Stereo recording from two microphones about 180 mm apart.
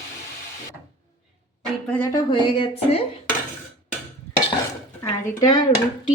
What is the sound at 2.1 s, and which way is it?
Speech, 25° left (ahead or behind).